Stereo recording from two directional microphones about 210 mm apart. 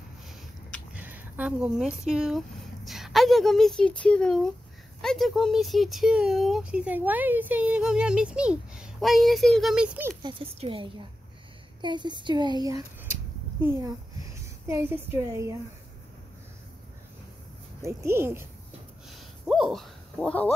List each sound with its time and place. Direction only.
0.9 s speech: 10° right (ahead or behind)
10.2 s a woman's voice: 25° right (ahead or behind)
17.8 s a woman's voice: 10° right (ahead or behind)
19.0 s a sound: centre (ahead or behind)